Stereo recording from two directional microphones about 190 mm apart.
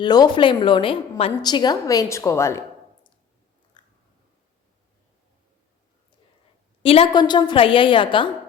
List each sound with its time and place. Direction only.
0.0 s a woman's voice: 20° left (ahead or behind)
3.8 s chewing: 25° left (ahead or behind)
6.8 s a woman's voice: 30° left (ahead or behind)